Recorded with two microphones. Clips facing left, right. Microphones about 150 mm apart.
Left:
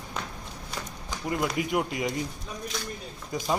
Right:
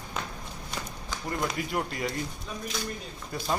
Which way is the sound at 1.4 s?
10° left (ahead or behind).